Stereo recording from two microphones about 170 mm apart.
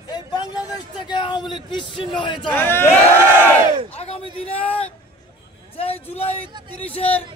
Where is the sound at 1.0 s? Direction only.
25° left (ahead or behind).